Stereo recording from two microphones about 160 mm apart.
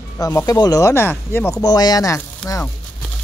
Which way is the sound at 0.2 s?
20° left (ahead or behind).